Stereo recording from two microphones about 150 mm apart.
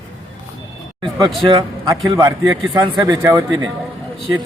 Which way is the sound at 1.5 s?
25° right (ahead or behind).